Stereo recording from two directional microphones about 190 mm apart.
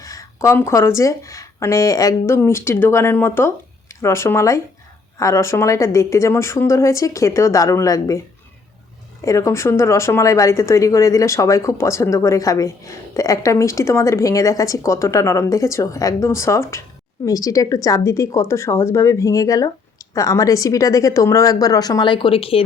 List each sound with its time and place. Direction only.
0.0 s speech: 15° left (ahead or behind)
9.2 s speech: 15° left (ahead or behind)